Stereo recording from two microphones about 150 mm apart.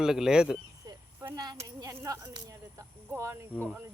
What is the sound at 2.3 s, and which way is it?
Speech, 20° right (ahead or behind).